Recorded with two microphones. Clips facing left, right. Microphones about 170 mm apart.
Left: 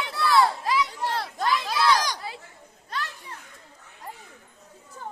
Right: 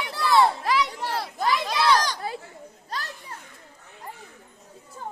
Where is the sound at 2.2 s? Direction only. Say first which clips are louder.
Right 5 dB; 50° right (ahead or behind).